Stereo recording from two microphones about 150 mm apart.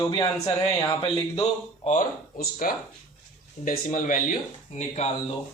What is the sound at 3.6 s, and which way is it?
Speech, 60° left (ahead or behind).